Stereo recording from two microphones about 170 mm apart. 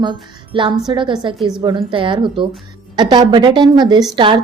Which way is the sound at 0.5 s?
30° right (ahead or behind).